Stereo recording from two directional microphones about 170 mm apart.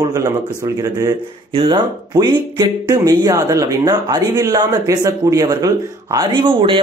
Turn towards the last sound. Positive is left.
turn(degrees=-30)  # may be behind; listen again after turning